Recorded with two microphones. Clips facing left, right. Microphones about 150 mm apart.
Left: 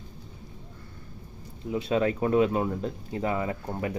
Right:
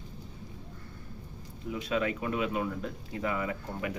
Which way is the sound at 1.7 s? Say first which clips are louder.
Left 5 dB; 30° left (ahead or behind).